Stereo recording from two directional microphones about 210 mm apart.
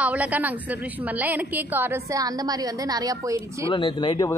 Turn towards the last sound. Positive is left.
turn(degrees=25)  # may be behind; listen again after turning